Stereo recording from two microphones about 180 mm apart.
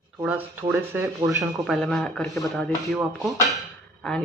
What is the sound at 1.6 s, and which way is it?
Speech, centre (ahead or behind).